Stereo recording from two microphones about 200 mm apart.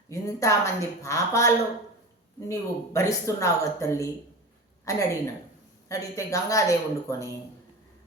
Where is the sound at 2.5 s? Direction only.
15° left (ahead or behind).